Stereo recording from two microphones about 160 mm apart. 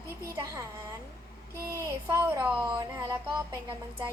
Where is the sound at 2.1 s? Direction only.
15° right (ahead or behind).